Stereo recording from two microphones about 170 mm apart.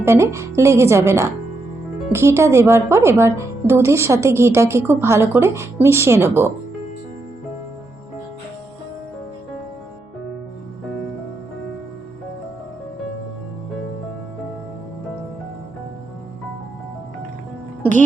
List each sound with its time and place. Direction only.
0.0 s a woman's voice: 15° right (ahead or behind)